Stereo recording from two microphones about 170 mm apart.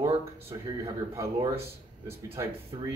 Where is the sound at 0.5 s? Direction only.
25° right (ahead or behind).